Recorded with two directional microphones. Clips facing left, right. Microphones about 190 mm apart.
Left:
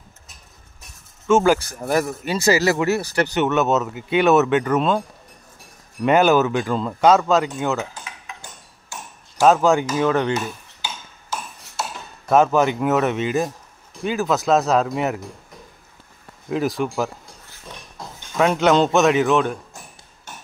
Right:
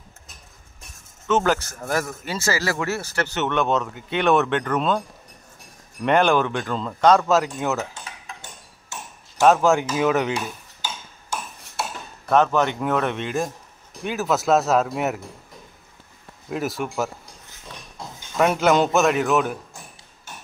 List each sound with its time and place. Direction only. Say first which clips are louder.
1.2 s speech: left 5 dB; 10° left (ahead or behind)
6.0 s speech: left 3 dB; 5° left (ahead or behind)
7.9 s cutlery: left 1 dB; 25° right (ahead or behind)
9.4 s speech: left 1 dB; centre (ahead or behind)
10.8 s a sound: right 2 dB; 50° right (ahead or behind)
12.3 s speech: left 3 dB; 10° left (ahead or behind)
16.4 s speech: left 4 dB; centre (ahead or behind)
18.4 s speech: left 2 dB; 5° right (ahead or behind)